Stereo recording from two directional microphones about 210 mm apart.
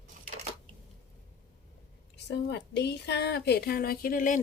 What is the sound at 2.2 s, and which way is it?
A woman's voice, 55° left (ahead or behind).